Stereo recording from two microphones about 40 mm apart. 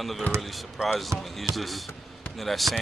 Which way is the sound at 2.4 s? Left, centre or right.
Centre.